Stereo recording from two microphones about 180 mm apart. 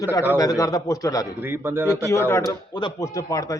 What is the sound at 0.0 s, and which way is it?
A man's voice, 15° left (ahead or behind).